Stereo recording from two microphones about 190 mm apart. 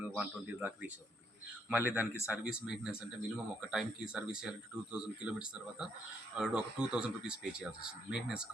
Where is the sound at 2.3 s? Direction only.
5° right (ahead or behind).